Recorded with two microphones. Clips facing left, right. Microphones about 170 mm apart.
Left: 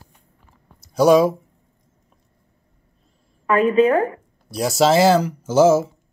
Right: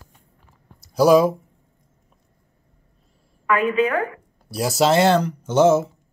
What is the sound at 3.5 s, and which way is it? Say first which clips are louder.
Speech: left 4 dB; 35° left (ahead or behind).